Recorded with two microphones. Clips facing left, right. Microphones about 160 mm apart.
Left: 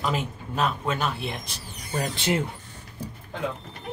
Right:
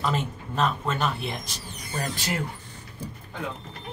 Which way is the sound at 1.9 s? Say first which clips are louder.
Left 4 dB; 15° left (ahead or behind).